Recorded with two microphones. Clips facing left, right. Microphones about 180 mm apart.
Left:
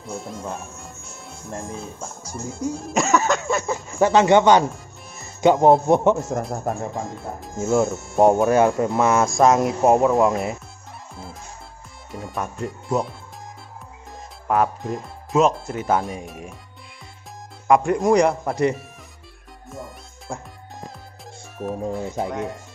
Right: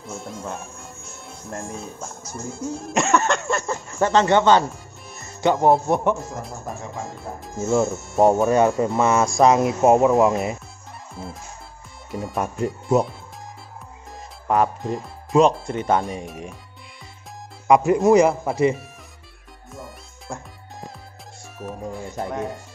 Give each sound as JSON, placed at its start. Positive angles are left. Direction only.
{"t": 0.0, "sound": "speech", "side_deg": 0}
{"t": 6.5, "sound": "speech", "side_deg": 60}
{"t": 6.9, "sound": "speech", "side_deg": 0}
{"t": 11.2, "sound": "music", "side_deg": 0}
{"t": 12.1, "sound": "speech", "side_deg": 0}
{"t": 14.5, "sound": "speech", "side_deg": 0}
{"t": 17.6, "sound": "speech", "side_deg": 0}
{"t": 19.7, "sound": "music", "side_deg": 0}
{"t": 21.5, "sound": "speech", "side_deg": 0}